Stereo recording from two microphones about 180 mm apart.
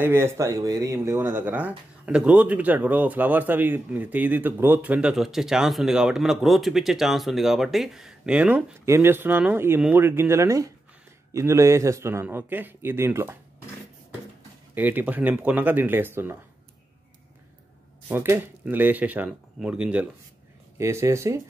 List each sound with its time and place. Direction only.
0.0 s speech: 15° right (ahead or behind)
14.7 s speech: 10° right (ahead or behind)
18.0 s speech: 15° right (ahead or behind)